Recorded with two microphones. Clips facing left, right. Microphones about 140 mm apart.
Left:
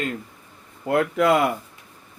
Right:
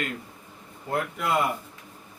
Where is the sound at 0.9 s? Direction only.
90° left.